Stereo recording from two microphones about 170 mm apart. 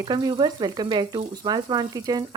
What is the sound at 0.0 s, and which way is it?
Speech, 25° right (ahead or behind).